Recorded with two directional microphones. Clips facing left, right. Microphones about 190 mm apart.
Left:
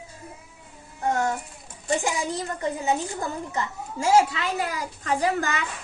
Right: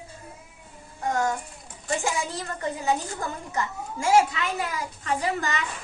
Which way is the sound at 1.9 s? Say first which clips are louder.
Left 2 dB; 20° left (ahead or behind).